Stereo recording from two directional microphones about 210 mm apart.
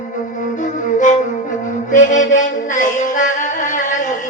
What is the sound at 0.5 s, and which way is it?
Flute, 35° left (ahead or behind).